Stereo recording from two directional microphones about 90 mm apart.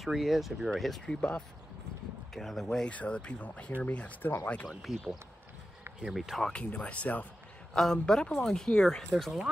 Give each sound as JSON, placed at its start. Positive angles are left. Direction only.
{"t": 0.0, "sound": "speech", "side_deg": -5}
{"t": 2.3, "sound": "speech", "side_deg": 0}
{"t": 4.6, "sound": "speech", "side_deg": 0}
{"t": 6.4, "sound": "speech", "side_deg": 15}